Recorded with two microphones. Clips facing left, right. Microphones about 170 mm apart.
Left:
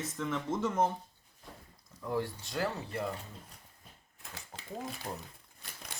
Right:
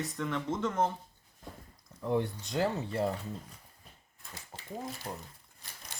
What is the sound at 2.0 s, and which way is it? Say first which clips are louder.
Speech: right 4 dB; 20° right (ahead or behind).